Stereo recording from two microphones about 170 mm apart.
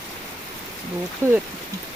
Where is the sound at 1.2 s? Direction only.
15° right (ahead or behind).